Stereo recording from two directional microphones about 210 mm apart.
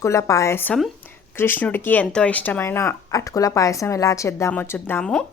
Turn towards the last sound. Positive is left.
turn(degrees=5)  # may be behind; listen again after turning